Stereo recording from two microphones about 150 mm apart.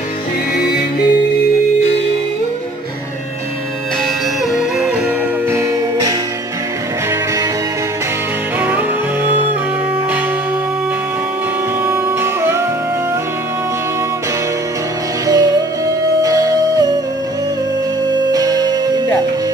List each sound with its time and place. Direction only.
0.6 s music: 90° left
4.5 s music: 5° right (ahead or behind)
5.5 s music: 15° right (ahead or behind)
8.5 s music: 10° right (ahead or behind)
11.8 s music: 15° right (ahead or behind)
15.2 s music: 25° right (ahead or behind)
18.3 s music: 25° right (ahead or behind)